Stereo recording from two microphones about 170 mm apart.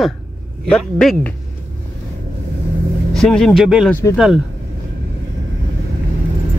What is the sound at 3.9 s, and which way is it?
Speech, 15° left (ahead or behind).